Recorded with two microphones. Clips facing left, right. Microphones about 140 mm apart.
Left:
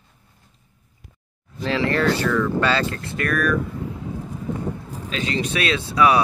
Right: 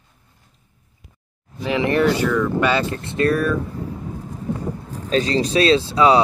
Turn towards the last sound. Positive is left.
turn(degrees=-25)  # may be behind; listen again after turning